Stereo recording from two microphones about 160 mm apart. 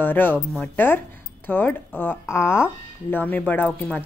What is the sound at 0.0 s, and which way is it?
Speech, 10° left (ahead or behind).